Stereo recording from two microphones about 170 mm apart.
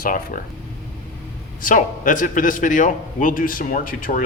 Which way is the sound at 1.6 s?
50° left (ahead or behind).